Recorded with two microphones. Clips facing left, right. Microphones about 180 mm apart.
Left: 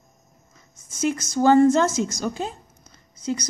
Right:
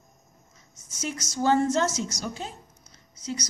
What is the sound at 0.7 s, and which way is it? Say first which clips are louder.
A woman's voice: left 10 dB; 55° left (ahead or behind).